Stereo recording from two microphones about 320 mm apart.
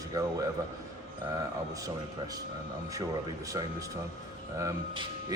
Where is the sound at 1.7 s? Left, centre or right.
Centre.